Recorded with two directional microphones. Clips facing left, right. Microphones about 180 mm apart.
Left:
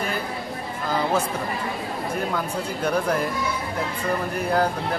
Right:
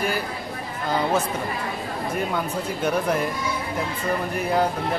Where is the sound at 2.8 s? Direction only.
5° right (ahead or behind).